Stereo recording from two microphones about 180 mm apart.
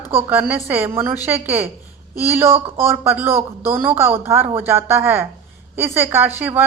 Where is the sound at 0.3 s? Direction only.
10° right (ahead or behind).